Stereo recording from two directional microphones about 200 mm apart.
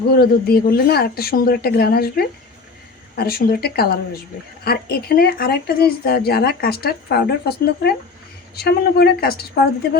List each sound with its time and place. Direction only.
0.2 s speech: 50° left (ahead or behind)